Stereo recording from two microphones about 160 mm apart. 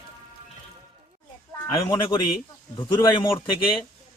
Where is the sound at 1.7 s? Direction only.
25° left (ahead or behind).